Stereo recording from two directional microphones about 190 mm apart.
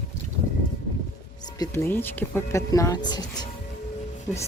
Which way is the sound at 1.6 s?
15° left (ahead or behind).